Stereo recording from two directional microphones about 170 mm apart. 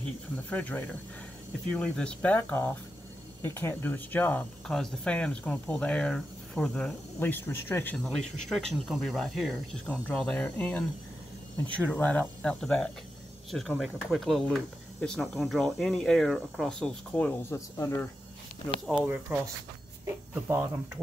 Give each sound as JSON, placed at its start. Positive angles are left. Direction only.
{"t": 0.5, "sound": "speech", "side_deg": 10}
{"t": 8.4, "sound": "speech", "side_deg": 0}
{"t": 18.9, "sound": "speech", "side_deg": -5}